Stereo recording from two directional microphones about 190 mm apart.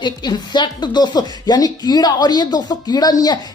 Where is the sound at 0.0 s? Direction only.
20° left (ahead or behind).